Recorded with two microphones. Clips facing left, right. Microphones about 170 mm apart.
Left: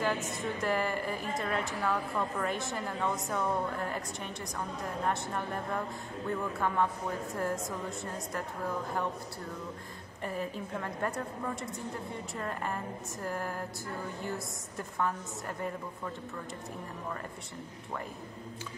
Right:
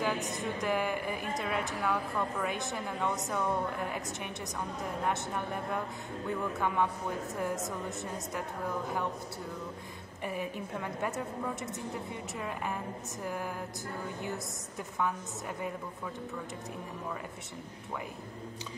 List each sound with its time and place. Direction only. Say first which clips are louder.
0.0 s a woman's voice: even; centre (ahead or behind)
10.2 s a woman's voice: even; 5° right (ahead or behind)
14.8 s a woman's voice: even; centre (ahead or behind)